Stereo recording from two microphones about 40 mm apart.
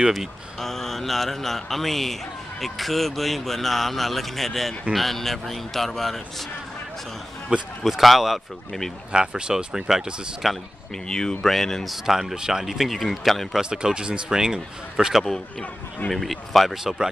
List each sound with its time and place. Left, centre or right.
0.6 s a man's voice: centre
7.5 s speech: right
7.8 s a man's voice: centre
9.1 s speech: right
10.4 s a man's voice: centre
11.1 s speech: centre
11.4 s speech: centre
11.8 s a man's voice: centre
13.6 s speech: right
16.1 s a man's voice: centre
16.7 s speech: centre